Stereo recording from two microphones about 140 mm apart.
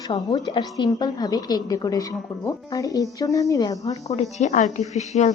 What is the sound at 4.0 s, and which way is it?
Speech, 50° left (ahead or behind).